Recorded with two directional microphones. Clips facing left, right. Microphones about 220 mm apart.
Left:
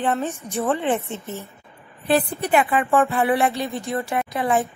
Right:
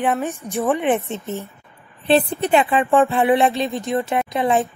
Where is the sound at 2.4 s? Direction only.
20° right (ahead or behind).